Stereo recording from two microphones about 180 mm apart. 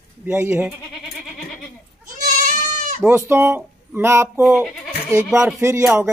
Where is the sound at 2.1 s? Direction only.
45° right (ahead or behind).